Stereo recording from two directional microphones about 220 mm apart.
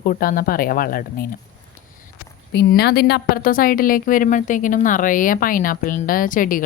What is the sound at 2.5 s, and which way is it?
Speech, 45° left (ahead or behind).